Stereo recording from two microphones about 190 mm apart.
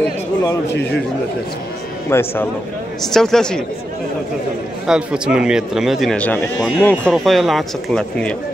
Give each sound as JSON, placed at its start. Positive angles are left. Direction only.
{"t": 0.7, "sound": "a man's voice", "side_deg": 65}
{"t": 2.0, "sound": "speech", "side_deg": 10}
{"t": 4.8, "sound": "speech", "side_deg": -5}